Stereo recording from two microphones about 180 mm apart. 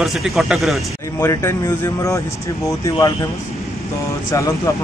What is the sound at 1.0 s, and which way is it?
Speech, 15° left (ahead or behind).